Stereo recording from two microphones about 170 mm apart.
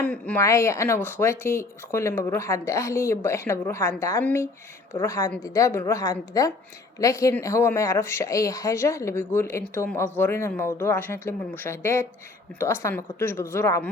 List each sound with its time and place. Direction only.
0.0 s a woman's voice: 10° left (ahead or behind)